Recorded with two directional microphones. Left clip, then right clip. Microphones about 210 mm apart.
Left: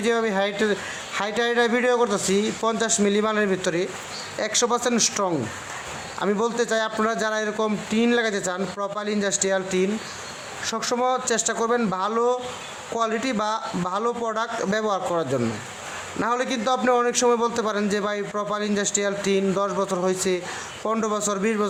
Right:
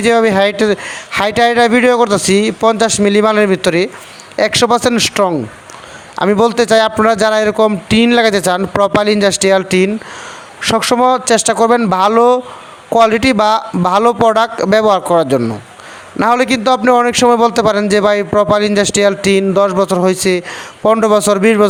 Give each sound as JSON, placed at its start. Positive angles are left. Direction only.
{"t": 0.0, "sound": "a man's voice", "side_deg": -35}